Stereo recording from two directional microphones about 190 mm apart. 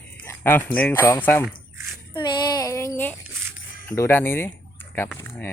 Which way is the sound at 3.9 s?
15° left (ahead or behind).